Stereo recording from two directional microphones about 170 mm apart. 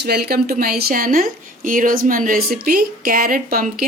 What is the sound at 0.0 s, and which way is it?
Speech, 70° right (ahead or behind).